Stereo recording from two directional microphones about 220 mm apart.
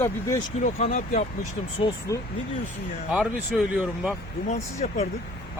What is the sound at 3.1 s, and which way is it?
Speech, 5° right (ahead or behind).